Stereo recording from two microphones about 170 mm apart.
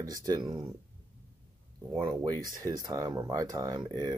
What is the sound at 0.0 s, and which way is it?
Speech, 20° right (ahead or behind).